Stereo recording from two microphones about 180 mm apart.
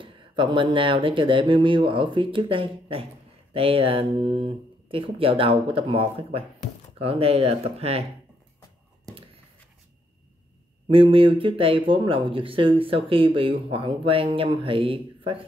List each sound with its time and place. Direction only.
0.0 s speech: 25° right (ahead or behind)
10.9 s speech: 30° right (ahead or behind)